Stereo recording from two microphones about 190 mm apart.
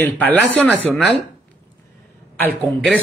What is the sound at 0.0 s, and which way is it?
Speech, 10° left (ahead or behind).